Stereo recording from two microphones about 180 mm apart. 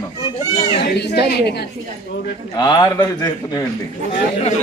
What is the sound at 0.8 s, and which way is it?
Speech, 65° left (ahead or behind).